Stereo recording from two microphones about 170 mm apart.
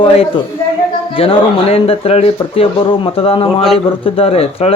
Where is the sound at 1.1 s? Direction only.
35° left (ahead or behind).